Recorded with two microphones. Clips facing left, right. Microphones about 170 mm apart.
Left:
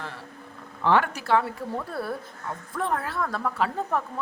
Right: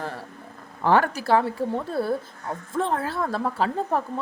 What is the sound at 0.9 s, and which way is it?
Speech, 40° right (ahead or behind).